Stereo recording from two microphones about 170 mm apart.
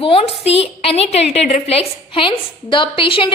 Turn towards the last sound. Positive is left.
turn(degrees=30)  # may be behind; listen again after turning